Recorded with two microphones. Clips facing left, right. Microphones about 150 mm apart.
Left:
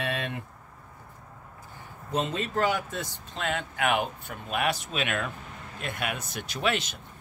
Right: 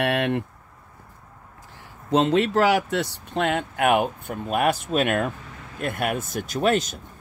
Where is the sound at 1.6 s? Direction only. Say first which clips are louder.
Even; 90° right; by 7.0 s 45° right (ahead or behind).